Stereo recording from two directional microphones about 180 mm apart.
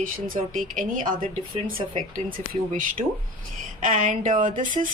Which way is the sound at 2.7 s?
45° right (ahead or behind).